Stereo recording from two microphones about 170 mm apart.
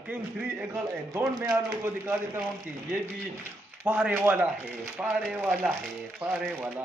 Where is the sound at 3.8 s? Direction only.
10° right (ahead or behind).